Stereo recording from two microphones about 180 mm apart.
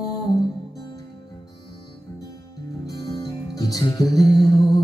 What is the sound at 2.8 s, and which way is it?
Music, 20° left (ahead or behind).